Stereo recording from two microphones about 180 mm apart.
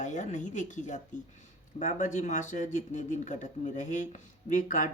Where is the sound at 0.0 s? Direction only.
40° left (ahead or behind).